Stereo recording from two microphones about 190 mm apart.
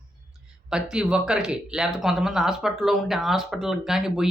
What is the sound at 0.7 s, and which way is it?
Speech, 5° right (ahead or behind).